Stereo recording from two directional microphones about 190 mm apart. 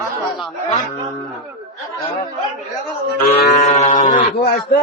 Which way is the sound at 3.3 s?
40° left (ahead or behind).